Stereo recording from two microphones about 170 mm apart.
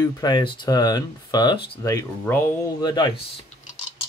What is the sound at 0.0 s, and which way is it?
Speech, 25° left (ahead or behind).